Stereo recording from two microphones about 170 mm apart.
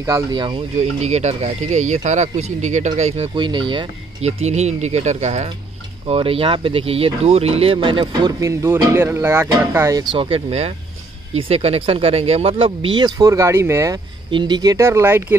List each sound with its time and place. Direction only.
0.0 s speech: 20° right (ahead or behind)
0.7 s speech: 40° right (ahead or behind)
3.3 s speech: 30° right (ahead or behind)
4.3 s speech: 40° right (ahead or behind); by 10.0 s 15° right (ahead or behind)
10.1 s speech: 35° right (ahead or behind); by 15.3 s 15° right (ahead or behind)